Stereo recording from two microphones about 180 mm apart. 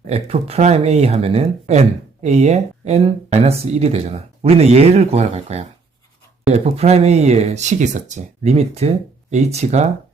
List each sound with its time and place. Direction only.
0.1 s speech: 35° right (ahead or behind)